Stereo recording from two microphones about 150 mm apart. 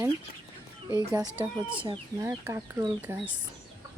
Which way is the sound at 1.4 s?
10° right (ahead or behind).